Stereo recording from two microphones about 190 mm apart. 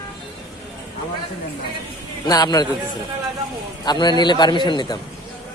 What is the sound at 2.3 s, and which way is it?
Speech, 20° left (ahead or behind).